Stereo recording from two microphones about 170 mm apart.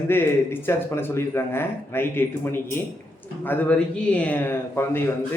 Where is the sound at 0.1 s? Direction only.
15° left (ahead or behind).